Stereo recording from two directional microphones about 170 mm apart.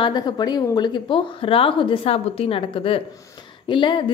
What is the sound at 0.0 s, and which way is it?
A woman's voice, 25° left (ahead or behind).